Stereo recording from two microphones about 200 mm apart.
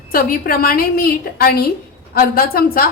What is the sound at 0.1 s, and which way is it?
A woman's voice, 45° left (ahead or behind).